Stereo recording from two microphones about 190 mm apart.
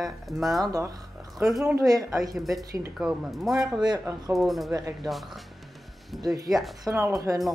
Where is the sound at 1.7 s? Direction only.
20° right (ahead or behind).